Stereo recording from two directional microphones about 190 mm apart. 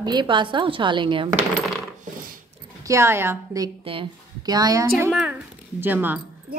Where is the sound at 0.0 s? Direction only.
25° right (ahead or behind).